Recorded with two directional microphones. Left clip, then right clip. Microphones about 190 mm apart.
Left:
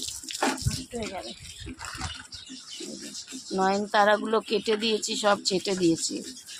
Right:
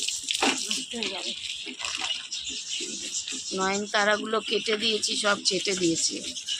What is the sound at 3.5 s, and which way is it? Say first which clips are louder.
Speech: left 3 dB; 55° left (ahead or behind).